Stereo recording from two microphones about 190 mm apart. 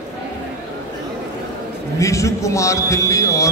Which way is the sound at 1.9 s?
15° left (ahead or behind).